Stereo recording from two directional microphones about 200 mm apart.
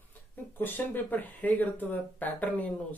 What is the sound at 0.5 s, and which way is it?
Speech, 10° left (ahead or behind).